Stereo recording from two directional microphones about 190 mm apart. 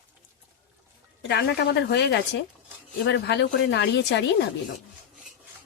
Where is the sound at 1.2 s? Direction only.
65° left (ahead or behind).